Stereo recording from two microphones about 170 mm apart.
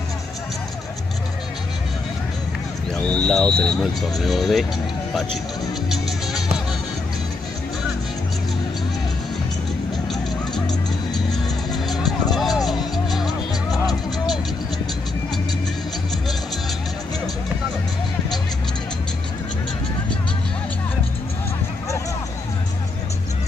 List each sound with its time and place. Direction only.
3.1 s speech: 5° left (ahead or behind)
5.9 s music: centre (ahead or behind)
10.0 s music: 5° left (ahead or behind)
13.5 s music: 20° left (ahead or behind)